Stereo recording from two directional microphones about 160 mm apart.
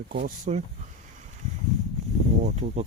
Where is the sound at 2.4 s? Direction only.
45° right (ahead or behind).